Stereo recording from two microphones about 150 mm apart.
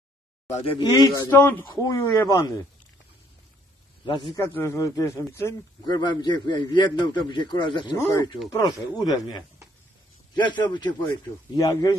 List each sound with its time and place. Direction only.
0.5 s speech: 50° left (ahead or behind)
0.7 s speech: 30° left (ahead or behind); by 1.7 s 10° left (ahead or behind)
1.7 s speech: 25° left (ahead or behind)
4.0 s a man's voice: 30° left (ahead or behind)
4.6 s a man's voice: 20° left (ahead or behind)
8.0 s a man's voice: 20° left (ahead or behind)